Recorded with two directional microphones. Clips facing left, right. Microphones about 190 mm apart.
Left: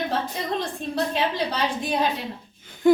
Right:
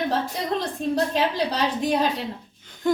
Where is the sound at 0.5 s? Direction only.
35° right (ahead or behind).